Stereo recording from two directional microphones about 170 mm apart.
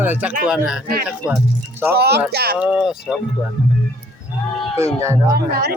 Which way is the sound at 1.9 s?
70° right (ahead or behind).